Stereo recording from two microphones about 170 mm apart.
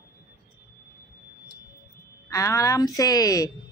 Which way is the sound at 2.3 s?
20° left (ahead or behind).